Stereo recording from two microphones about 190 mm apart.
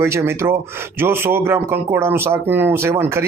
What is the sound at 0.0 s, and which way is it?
Speech, 15° right (ahead or behind).